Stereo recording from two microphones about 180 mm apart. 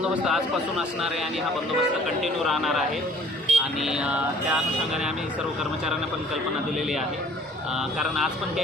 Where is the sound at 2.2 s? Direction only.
Centre (ahead or behind).